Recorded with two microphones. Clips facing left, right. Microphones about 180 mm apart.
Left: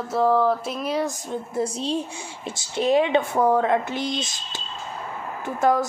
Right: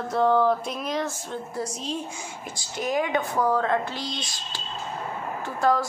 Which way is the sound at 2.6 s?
25° left (ahead or behind).